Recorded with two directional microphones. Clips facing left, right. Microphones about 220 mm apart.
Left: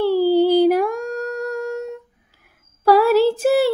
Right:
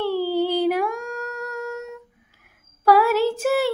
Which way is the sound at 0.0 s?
35° left (ahead or behind).